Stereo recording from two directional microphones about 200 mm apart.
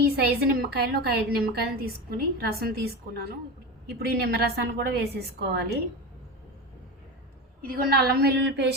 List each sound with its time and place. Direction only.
0.2 s a woman's voice: 50° right (ahead or behind)
7.6 s a woman's voice: 50° right (ahead or behind)